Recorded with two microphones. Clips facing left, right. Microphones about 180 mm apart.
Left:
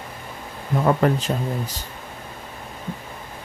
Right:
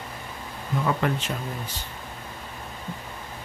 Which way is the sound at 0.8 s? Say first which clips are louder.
Left 7 dB; 45° left (ahead or behind).